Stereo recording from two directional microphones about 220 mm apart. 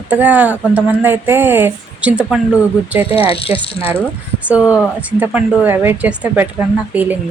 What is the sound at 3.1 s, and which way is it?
Speech, 25° left (ahead or behind).